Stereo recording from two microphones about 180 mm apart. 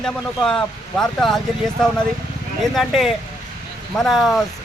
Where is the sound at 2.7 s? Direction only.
Centre (ahead or behind).